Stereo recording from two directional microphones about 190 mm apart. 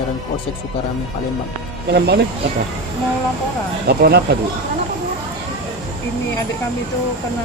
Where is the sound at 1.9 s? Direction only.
55° right (ahead or behind).